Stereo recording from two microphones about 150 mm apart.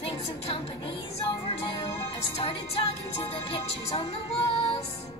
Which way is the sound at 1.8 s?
40° left (ahead or behind).